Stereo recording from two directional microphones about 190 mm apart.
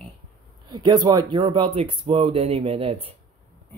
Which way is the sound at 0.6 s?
20° right (ahead or behind).